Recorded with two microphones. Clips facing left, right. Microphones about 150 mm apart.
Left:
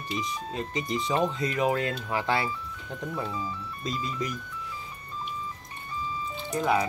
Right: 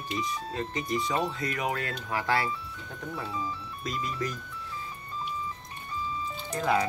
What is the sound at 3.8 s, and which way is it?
Speech, 25° left (ahead or behind).